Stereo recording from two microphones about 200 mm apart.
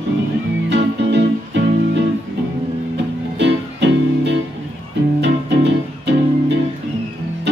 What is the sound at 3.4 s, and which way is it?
Music, 60° right (ahead or behind).